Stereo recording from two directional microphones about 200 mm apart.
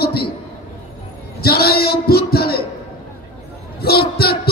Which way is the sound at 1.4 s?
50° left (ahead or behind).